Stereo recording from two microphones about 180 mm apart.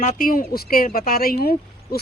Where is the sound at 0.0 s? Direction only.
45° left (ahead or behind).